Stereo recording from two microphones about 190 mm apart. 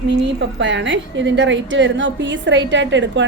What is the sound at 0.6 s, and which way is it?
A woman's voice, 70° right (ahead or behind).